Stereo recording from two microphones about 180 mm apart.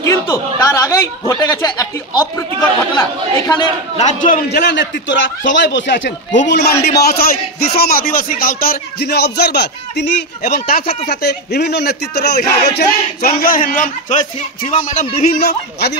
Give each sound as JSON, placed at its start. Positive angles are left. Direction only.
{"t": 0.0, "sound": "speech", "side_deg": 20}
{"t": 3.9, "sound": "a man's voice", "side_deg": 40}
{"t": 4.5, "sound": "speech", "side_deg": 75}
{"t": 10.5, "sound": "a man's voice", "side_deg": 55}
{"t": 15.3, "sound": "speech", "side_deg": 60}